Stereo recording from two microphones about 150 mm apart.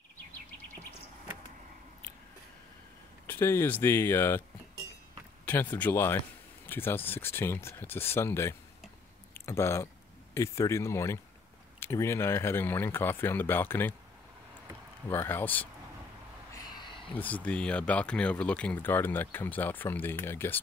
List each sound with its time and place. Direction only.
3.3 s speech: 15° left (ahead or behind)
5.4 s speech: 10° left (ahead or behind)
15.0 s speech: 15° left (ahead or behind)
16.5 s a sound: 30° left (ahead or behind)
17.1 s speech: 10° left (ahead or behind)